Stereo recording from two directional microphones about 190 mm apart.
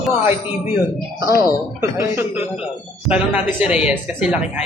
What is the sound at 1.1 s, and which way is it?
Speech, 15° right (ahead or behind).